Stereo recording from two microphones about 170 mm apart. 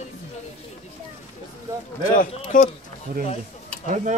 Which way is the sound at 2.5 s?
50° left (ahead or behind).